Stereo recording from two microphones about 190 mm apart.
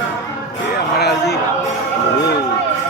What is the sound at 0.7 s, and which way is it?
Music, 55° left (ahead or behind).